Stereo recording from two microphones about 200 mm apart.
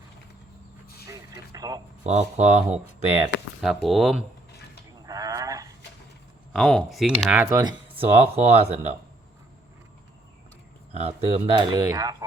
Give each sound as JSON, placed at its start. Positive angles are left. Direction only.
{"t": 1.1, "sound": "a sound", "side_deg": -20}
{"t": 2.0, "sound": "speech", "side_deg": -35}
{"t": 3.6, "sound": "speech", "side_deg": 0}
{"t": 5.0, "sound": "livestock", "side_deg": -15}
{"t": 6.5, "sound": "speech", "side_deg": 0}
{"t": 7.6, "sound": "speech", "side_deg": -25}
{"t": 10.9, "sound": "speech", "side_deg": -30}